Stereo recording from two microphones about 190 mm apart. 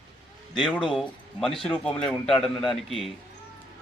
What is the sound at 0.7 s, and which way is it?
A man's voice, centre (ahead or behind).